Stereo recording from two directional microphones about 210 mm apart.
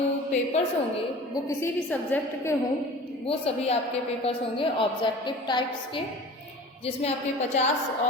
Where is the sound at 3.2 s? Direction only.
30° left (ahead or behind).